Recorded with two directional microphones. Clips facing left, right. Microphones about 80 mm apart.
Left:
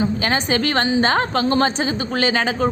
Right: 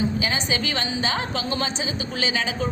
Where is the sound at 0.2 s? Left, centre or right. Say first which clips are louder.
Left 6 dB; left.